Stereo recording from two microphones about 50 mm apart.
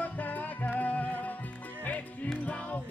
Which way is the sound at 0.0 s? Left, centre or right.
Left.